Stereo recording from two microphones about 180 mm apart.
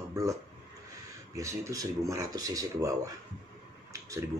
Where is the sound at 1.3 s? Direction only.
15° right (ahead or behind).